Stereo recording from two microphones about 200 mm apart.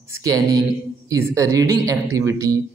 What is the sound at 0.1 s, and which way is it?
Speech, 15° right (ahead or behind).